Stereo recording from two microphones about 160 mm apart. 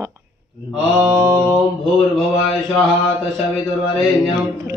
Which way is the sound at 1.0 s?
15° right (ahead or behind).